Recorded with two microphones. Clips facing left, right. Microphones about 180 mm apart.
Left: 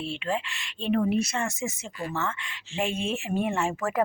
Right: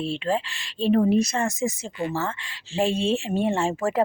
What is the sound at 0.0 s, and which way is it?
Speech, 35° right (ahead or behind).